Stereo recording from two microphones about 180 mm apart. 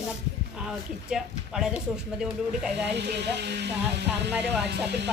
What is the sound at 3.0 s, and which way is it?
Speech, 70° right (ahead or behind).